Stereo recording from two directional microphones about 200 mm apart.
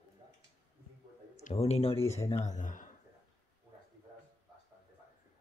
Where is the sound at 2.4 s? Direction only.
40° left (ahead or behind).